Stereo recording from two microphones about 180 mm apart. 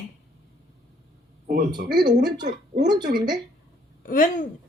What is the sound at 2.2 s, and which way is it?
Speech, 25° right (ahead or behind).